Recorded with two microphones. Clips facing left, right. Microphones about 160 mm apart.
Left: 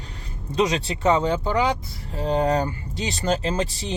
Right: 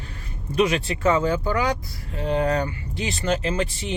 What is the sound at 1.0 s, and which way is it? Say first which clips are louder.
Speech: left 1 dB; 20° left (ahead or behind).